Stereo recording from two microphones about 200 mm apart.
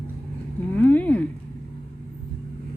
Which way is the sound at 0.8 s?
10° left (ahead or behind).